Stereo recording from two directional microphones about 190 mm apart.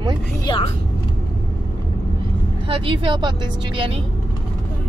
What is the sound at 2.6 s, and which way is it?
A woman's voice, 30° right (ahead or behind).